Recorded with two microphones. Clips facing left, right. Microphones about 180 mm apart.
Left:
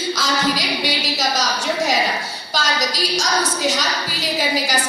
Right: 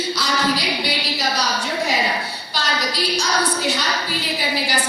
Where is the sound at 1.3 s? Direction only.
45° left (ahead or behind).